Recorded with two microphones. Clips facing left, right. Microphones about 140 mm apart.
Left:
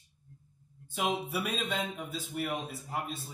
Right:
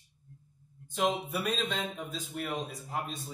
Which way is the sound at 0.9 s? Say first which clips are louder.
Right 2 dB; 10° left (ahead or behind).